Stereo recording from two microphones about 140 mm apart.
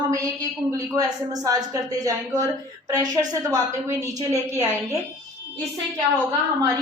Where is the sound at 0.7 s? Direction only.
25° right (ahead or behind).